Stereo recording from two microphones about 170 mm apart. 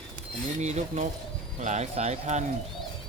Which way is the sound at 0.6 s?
40° right (ahead or behind).